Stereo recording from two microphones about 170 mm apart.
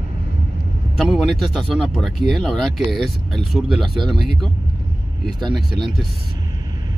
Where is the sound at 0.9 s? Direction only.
Centre (ahead or behind).